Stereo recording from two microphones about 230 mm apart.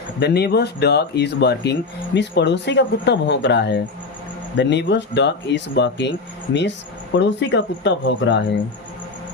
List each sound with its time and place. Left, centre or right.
0.2 s speech: left